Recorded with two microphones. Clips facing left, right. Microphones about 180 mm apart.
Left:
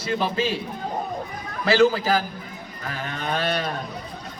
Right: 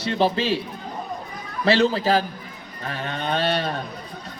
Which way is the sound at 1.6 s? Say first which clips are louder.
Left 1 dB; 30° right (ahead or behind).